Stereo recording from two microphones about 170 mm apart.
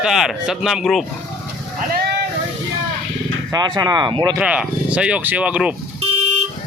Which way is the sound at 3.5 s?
25° right (ahead or behind).